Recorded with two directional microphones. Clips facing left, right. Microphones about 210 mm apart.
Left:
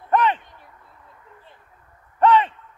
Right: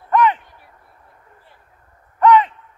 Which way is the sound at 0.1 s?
25° left (ahead or behind).